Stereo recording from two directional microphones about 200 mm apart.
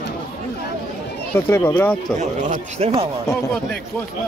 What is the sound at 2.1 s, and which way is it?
Speech, 35° right (ahead or behind).